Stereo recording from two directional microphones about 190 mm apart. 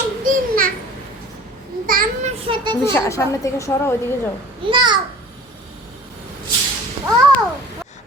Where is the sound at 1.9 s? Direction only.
50° right (ahead or behind).